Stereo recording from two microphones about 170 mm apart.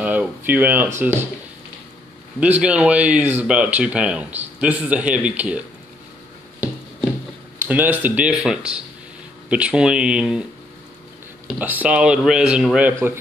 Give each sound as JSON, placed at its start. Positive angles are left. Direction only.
{"t": 0.0, "sound": "speech", "side_deg": -10}
{"t": 2.4, "sound": "speech", "side_deg": -10}
{"t": 7.6, "sound": "a man's voice", "side_deg": -10}
{"t": 11.4, "sound": "a man's voice", "side_deg": -10}